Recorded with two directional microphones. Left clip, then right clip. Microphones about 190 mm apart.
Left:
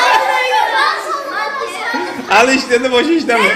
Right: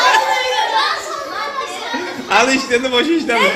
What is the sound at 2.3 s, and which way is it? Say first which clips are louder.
A man's voice: left 3 dB; 20° left (ahead or behind).